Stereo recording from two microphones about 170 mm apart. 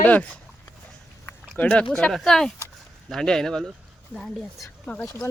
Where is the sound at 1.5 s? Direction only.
5° left (ahead or behind).